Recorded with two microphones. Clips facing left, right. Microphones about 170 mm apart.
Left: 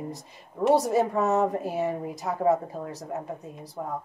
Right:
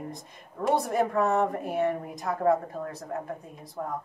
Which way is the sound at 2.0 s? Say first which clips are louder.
Left 1 dB; 20° left (ahead or behind).